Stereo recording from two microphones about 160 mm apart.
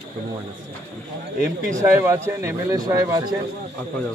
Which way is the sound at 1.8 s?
15° right (ahead or behind).